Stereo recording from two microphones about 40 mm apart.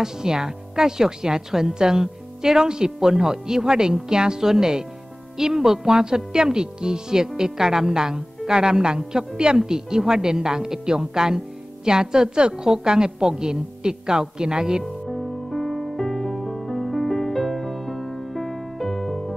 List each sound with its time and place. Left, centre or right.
0.0 s a woman's voice: centre
15.0 s music: centre